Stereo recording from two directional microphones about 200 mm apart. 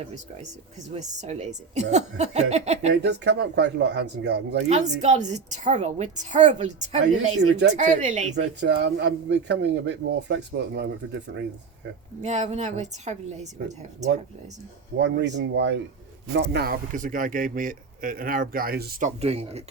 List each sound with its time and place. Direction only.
0.9 s a woman's voice: 35° right (ahead or behind)
2.9 s speech: 60° right (ahead or behind)
4.9 s a woman's voice: 35° right (ahead or behind)
8.4 s speech: 55° right (ahead or behind)
12.2 s a woman's voice: 35° right (ahead or behind)
14.9 s a man's voice: 60° right (ahead or behind)
19.2 s a woman's voice: 30° right (ahead or behind)